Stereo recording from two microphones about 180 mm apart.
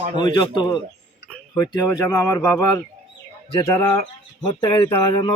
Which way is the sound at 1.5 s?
20° left (ahead or behind).